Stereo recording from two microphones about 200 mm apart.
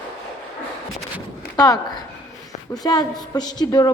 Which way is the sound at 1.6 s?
20° left (ahead or behind).